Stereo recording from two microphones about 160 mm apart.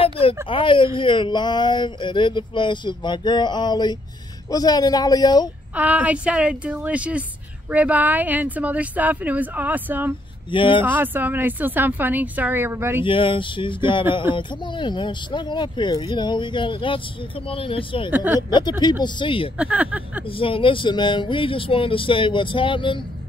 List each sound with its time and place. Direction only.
0.0 s a sound: 35° left (ahead or behind)
0.5 s speech: 35° left (ahead or behind)
5.8 s speech: 10° right (ahead or behind)
10.5 s speech: 30° left (ahead or behind)
10.8 s speech: 10° right (ahead or behind)
13.0 s speech: 30° left (ahead or behind)
18.1 s speech: 10° right (ahead or behind)
18.5 s speech: 25° left (ahead or behind)
19.6 s speech: 10° right (ahead or behind)
20.2 s speech: 35° left (ahead or behind)